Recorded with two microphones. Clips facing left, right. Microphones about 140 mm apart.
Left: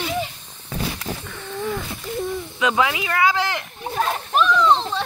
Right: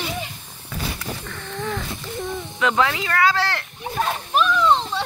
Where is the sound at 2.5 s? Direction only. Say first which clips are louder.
Even; 15° left (ahead or behind).